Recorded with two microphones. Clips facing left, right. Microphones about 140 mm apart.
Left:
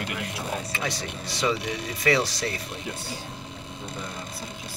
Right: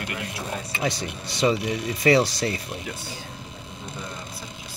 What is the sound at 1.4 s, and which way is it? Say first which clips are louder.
Speech: right 5 dB; 30° right (ahead or behind).